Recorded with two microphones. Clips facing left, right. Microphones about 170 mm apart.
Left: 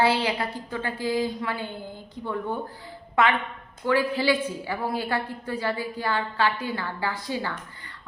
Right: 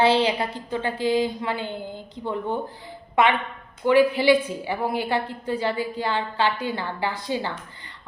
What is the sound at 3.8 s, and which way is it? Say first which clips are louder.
A woman's voice: right 6 dB; 20° right (ahead or behind).